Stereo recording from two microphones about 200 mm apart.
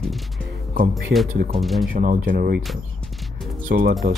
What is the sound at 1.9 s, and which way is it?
Speech, 40° right (ahead or behind).